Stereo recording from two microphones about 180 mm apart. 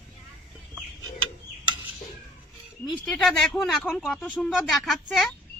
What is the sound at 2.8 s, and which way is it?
Speech, 5° left (ahead or behind).